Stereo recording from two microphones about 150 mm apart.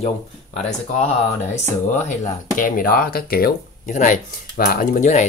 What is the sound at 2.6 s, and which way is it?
Speech, 75° left (ahead or behind).